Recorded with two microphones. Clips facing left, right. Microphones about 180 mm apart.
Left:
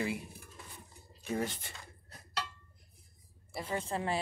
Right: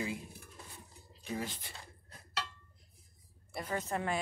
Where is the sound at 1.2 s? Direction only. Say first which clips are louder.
Left 4 dB; 50° left (ahead or behind).